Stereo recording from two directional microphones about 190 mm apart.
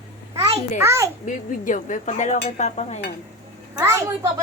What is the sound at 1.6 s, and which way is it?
Speech, 40° left (ahead or behind).